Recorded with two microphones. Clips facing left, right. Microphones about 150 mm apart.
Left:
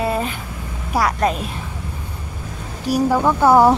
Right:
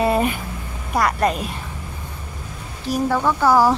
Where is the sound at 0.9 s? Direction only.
Centre (ahead or behind).